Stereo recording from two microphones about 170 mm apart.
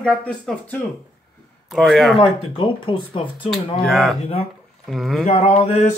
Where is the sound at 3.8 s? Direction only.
Centre (ahead or behind).